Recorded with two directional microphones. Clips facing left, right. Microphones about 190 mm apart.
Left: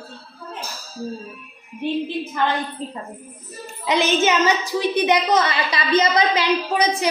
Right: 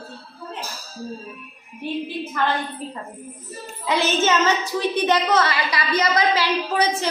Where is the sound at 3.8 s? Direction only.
20° left (ahead or behind).